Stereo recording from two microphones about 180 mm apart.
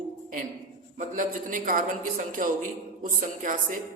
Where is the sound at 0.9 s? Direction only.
45° right (ahead or behind).